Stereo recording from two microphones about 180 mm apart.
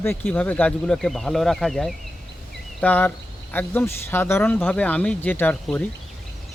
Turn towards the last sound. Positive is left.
turn(degrees=10)  # may be behind; listen again after turning